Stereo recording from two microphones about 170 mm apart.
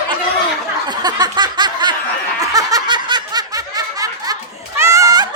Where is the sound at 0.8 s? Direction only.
25° right (ahead or behind).